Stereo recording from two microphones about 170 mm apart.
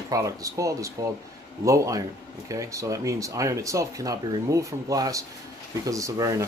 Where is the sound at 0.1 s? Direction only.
20° right (ahead or behind).